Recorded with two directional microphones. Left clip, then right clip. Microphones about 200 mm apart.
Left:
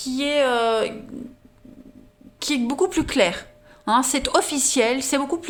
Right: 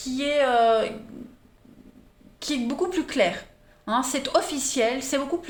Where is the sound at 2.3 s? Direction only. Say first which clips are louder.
Left 5 dB; 40° left (ahead or behind).